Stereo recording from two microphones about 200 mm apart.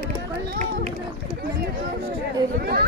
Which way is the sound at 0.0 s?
45° right (ahead or behind).